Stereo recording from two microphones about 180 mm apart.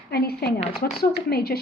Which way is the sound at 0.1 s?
60° left (ahead or behind).